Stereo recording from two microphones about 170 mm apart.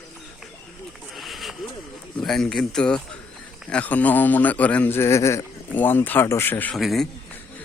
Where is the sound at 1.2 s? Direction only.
Centre (ahead or behind).